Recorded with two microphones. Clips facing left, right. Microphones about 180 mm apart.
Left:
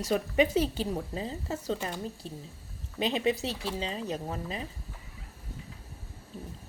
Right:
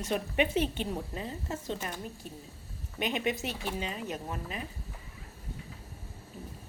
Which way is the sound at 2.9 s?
30° left (ahead or behind).